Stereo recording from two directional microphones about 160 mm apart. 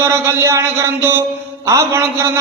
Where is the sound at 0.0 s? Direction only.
15° right (ahead or behind).